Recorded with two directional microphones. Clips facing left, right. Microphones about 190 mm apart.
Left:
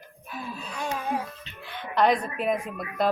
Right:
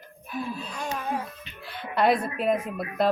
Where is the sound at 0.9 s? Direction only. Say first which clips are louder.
Left 1 dB; 10° left (ahead or behind).